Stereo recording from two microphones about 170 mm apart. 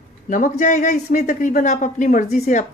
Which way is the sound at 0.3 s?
50° left (ahead or behind).